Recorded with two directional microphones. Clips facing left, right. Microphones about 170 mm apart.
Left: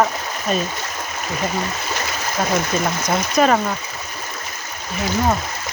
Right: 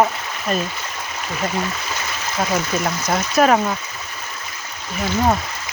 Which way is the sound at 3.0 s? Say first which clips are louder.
Right 1 dB; 5° right (ahead or behind).